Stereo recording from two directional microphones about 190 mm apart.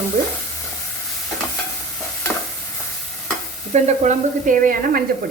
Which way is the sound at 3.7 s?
40° right (ahead or behind).